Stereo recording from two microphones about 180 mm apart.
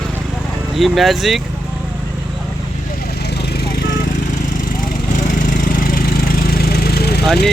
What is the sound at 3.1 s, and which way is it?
Vehicle, 65° left (ahead or behind).